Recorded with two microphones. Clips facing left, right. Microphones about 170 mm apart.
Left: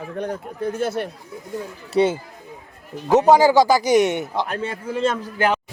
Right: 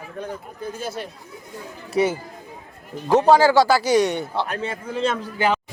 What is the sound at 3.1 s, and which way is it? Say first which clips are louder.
Speech: left 1 dB; 10° left (ahead or behind).